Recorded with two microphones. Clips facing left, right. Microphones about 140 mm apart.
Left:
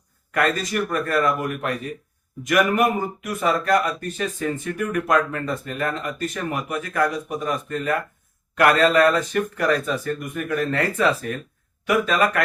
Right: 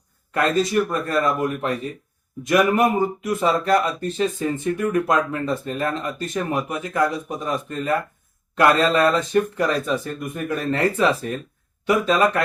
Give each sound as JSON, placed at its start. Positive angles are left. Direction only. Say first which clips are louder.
{"t": 0.3, "sound": "speech", "louder": "right 2 dB", "side_deg": -25}